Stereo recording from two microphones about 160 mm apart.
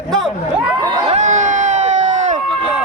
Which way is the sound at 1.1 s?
45° right (ahead or behind).